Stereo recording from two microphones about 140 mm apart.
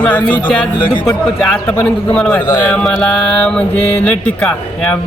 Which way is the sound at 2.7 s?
5° left (ahead or behind).